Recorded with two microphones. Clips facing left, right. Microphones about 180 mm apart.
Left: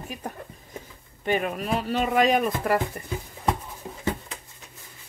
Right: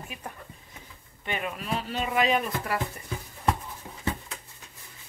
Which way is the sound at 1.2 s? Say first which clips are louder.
Left 7 dB; 45° left (ahead or behind).